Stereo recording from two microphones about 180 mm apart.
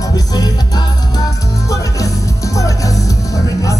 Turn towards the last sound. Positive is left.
turn(degrees=20)  # may be behind; listen again after turning